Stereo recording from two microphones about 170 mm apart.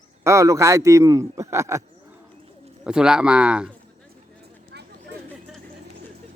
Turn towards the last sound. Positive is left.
turn(degrees=-75)  # may be behind; listen again after turning